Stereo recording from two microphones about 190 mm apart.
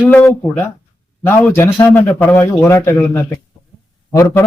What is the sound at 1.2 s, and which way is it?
A man's voice, 10° left (ahead or behind).